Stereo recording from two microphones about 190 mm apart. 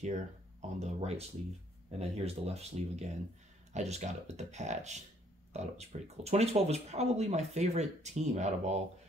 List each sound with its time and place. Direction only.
0.0 s speech: 35° right (ahead or behind)